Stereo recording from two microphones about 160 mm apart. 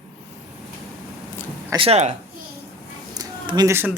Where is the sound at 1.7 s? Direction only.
35° right (ahead or behind).